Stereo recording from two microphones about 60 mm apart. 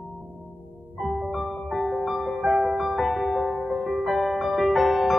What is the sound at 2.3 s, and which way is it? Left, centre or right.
Music, centre.